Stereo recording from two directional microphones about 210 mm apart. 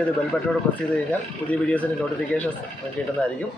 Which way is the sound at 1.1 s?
5° left (ahead or behind).